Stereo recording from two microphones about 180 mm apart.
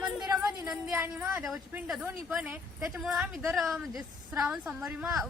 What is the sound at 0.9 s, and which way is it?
A woman's voice, 10° right (ahead or behind).